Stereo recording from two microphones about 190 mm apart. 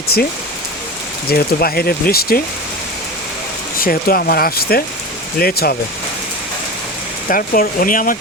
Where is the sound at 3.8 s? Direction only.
50° left (ahead or behind).